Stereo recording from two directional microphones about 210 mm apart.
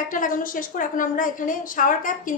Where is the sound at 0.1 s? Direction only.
40° left (ahead or behind).